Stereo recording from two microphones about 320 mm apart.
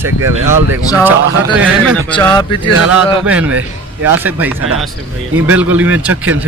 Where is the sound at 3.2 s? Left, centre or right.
Centre.